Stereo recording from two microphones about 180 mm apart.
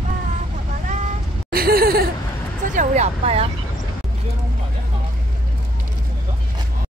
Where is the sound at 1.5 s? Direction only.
55° right (ahead or behind).